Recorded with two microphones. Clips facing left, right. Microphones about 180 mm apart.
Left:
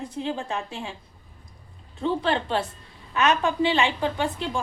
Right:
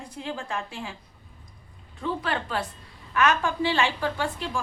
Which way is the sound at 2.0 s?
25° left (ahead or behind).